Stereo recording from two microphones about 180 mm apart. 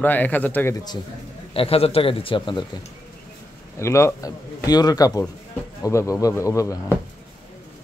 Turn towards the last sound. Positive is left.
turn(degrees=20)  # may be behind; listen again after turning